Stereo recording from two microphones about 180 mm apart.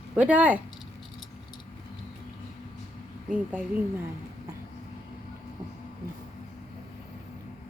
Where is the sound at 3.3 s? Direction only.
10° right (ahead or behind).